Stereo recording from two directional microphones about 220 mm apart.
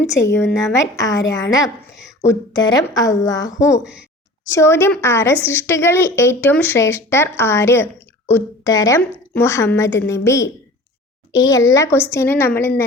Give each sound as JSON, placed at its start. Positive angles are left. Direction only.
{"t": 0.1, "sound": "a woman's voice", "side_deg": 15}